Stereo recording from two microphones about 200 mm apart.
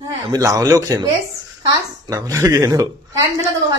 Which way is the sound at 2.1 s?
15° right (ahead or behind).